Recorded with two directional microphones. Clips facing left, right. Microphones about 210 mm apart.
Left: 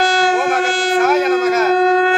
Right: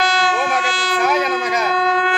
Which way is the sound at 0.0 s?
45° left (ahead or behind).